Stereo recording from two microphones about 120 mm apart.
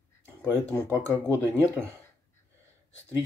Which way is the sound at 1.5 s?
20° right (ahead or behind).